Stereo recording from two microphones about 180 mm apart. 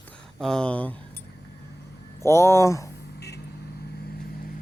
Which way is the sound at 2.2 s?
15° left (ahead or behind).